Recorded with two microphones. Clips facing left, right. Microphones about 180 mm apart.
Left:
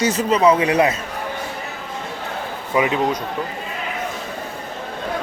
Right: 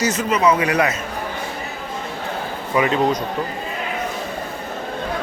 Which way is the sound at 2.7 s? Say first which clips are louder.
Right 1 dB; 15° left (ahead or behind).